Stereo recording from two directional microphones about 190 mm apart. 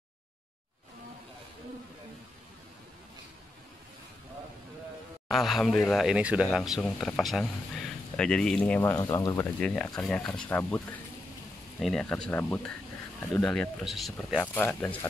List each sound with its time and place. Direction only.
5.3 s speech: centre (ahead or behind); by 9.5 s 15° left (ahead or behind)
9.6 s speech: 5° left (ahead or behind)